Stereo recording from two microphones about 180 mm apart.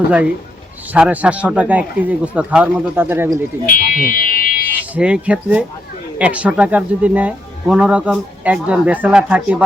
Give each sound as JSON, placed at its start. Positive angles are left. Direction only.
{"t": 0.9, "sound": "speech", "side_deg": -5}
{"t": 3.7, "sound": "a sound", "side_deg": 50}
{"t": 4.6, "sound": "speech", "side_deg": -10}